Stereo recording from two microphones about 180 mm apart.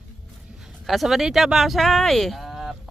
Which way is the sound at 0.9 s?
Centre (ahead or behind).